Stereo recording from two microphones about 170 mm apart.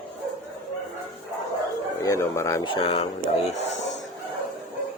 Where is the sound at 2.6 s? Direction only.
30° left (ahead or behind).